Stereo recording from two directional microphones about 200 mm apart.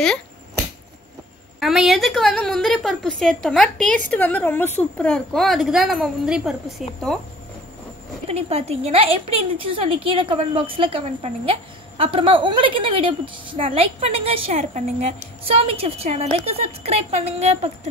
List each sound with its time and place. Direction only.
1.6 s a woman's voice: centre (ahead or behind)
8.3 s a woman's voice: 30° right (ahead or behind)